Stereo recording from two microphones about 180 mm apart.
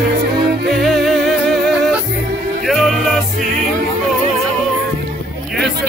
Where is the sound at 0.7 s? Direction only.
Centre (ahead or behind).